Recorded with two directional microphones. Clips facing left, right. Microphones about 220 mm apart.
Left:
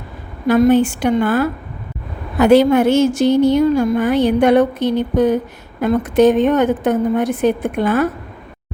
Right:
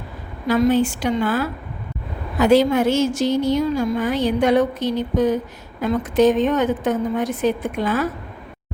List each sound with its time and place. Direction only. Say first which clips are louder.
0.4 s a woman's voice: left 5 dB; 60° left (ahead or behind)